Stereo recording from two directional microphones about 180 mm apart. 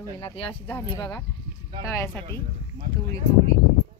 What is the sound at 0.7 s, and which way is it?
Speech, 10° left (ahead or behind).